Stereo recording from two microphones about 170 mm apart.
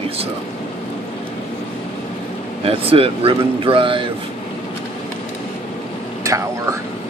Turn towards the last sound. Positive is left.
turn(degrees=-20)  # may be behind; listen again after turning